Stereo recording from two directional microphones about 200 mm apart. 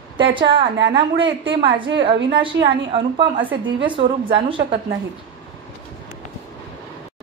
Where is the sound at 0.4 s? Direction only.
25° right (ahead or behind).